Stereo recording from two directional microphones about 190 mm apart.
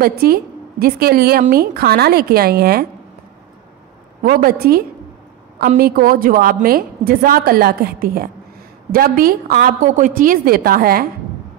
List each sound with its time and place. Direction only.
0.0 s a woman's voice: 50° right (ahead or behind)
4.2 s a woman's voice: 50° right (ahead or behind)